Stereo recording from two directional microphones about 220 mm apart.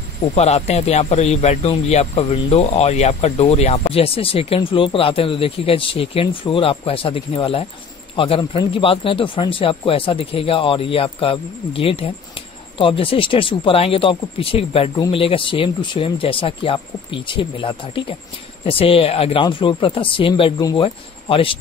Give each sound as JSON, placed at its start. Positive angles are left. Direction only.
{"t": 0.3, "sound": "a man's voice", "side_deg": 30}